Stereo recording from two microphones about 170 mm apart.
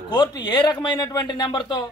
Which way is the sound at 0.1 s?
25° left (ahead or behind).